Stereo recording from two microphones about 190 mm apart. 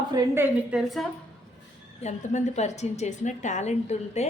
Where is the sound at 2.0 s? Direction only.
35° left (ahead or behind).